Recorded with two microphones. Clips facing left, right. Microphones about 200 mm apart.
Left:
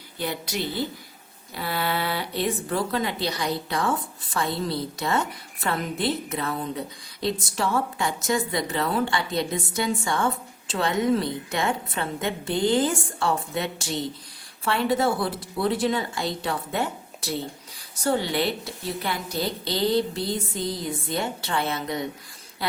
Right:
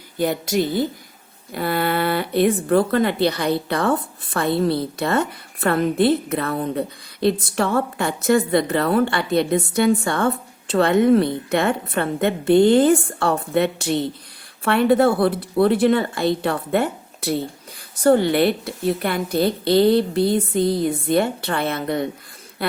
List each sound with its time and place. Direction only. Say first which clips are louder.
0.2 s a woman's voice: right 9 dB; 45° right (ahead or behind)